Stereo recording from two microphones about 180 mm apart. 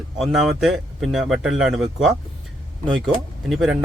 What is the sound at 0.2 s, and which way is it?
Speech, centre (ahead or behind).